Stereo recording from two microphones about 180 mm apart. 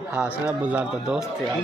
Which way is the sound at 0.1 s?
5° right (ahead or behind).